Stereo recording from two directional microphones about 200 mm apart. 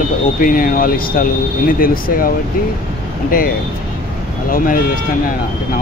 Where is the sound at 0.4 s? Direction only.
45° left (ahead or behind).